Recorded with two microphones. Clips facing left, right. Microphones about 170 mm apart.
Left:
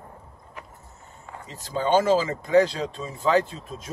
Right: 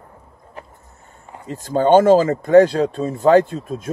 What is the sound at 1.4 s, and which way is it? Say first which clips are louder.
Speech: right 9 dB; 55° right (ahead or behind).